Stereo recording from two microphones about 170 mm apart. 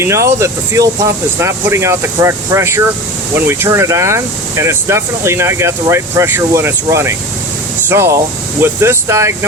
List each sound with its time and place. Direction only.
0.0 s speech: 15° right (ahead or behind)